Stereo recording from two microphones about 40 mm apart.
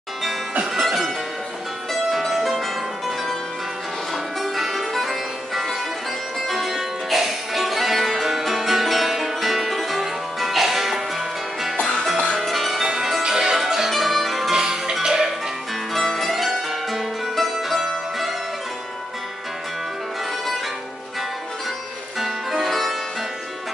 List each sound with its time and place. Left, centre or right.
0.7 s music: centre
2.1 s music: centre
4.4 s music: centre
12.4 s music: centre
14.5 s music: centre
15.9 s music: centre
22.2 s music: centre